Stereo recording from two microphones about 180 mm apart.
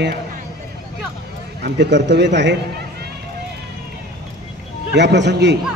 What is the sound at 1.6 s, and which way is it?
Speech, 75° right (ahead or behind).